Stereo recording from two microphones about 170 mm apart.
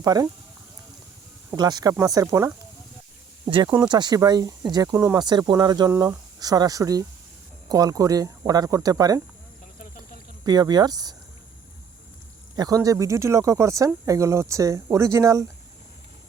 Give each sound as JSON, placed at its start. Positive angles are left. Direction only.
{"t": 0.0, "sound": "speech", "side_deg": -20}
{"t": 1.5, "sound": "speech", "side_deg": -25}
{"t": 10.4, "sound": "speech", "side_deg": -25}
{"t": 12.5, "sound": "speech", "side_deg": -20}